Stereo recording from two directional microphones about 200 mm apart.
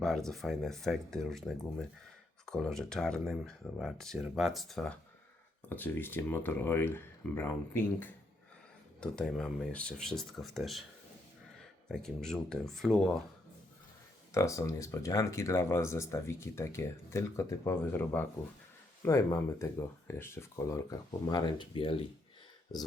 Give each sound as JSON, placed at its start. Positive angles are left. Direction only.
{"t": 0.0, "sound": "speech", "side_deg": 0}
{"t": 11.9, "sound": "speech", "side_deg": 5}
{"t": 14.3, "sound": "speech", "side_deg": 15}